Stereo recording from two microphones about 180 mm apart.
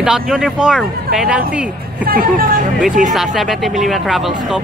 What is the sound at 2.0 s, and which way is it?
Speech, 55° right (ahead or behind).